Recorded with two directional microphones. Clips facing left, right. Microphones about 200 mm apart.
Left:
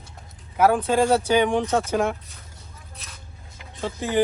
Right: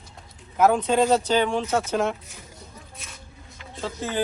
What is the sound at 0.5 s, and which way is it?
Speech, 5° left (ahead or behind).